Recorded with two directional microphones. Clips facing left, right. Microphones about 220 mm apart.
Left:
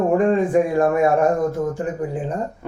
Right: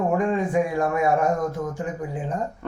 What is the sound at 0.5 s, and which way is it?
Speech, 55° left (ahead or behind).